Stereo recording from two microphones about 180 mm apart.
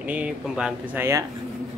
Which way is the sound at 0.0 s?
10° right (ahead or behind).